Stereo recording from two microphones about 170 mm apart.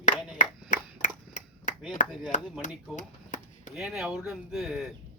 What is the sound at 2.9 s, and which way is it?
Chopping, 45° left (ahead or behind).